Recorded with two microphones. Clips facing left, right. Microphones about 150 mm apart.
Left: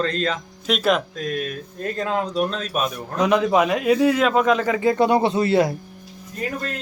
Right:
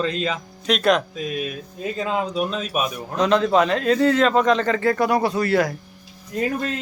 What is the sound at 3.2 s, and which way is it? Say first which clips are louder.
A man's voice: even; 10° left (ahead or behind).